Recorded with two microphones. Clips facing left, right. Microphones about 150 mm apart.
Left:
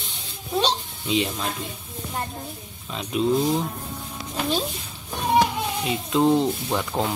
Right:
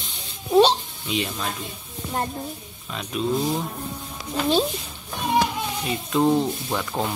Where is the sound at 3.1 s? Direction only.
20° left (ahead or behind).